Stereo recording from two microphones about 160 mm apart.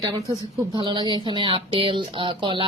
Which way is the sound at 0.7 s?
30° right (ahead or behind).